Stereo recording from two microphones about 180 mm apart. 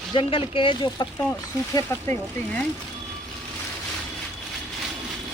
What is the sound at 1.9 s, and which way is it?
Speech, 15° left (ahead or behind).